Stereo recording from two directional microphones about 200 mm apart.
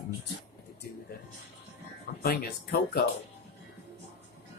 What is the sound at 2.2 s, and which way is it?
Speech, 50° left (ahead or behind).